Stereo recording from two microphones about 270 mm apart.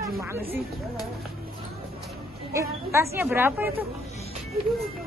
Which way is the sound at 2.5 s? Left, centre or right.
Centre.